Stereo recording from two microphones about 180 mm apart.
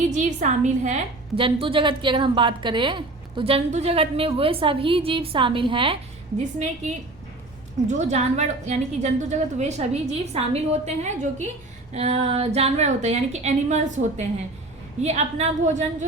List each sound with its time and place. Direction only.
0.1 s a woman's voice: 45° right (ahead or behind)
7.9 s a woman's voice: 40° right (ahead or behind)